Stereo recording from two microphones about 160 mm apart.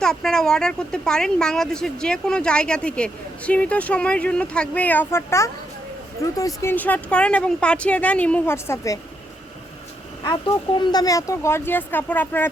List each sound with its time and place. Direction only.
0.0 s speech: 5° left (ahead or behind)
10.2 s speech: 25° left (ahead or behind); by 12.5 s 10° left (ahead or behind)